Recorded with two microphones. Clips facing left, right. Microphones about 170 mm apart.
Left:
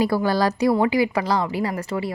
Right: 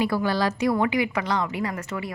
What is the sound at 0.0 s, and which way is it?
A woman's voice, 40° left (ahead or behind).